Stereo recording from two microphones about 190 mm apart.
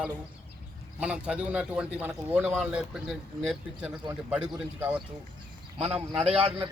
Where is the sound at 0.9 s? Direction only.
5° right (ahead or behind).